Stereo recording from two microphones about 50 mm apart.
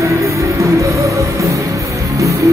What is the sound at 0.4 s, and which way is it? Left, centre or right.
Music, right.